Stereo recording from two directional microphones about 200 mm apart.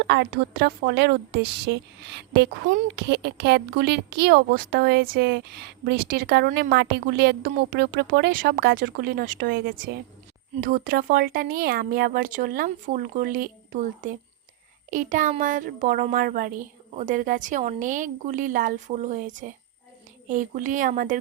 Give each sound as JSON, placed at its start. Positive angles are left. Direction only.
{"t": 0.0, "sound": "a woman's voice", "side_deg": -55}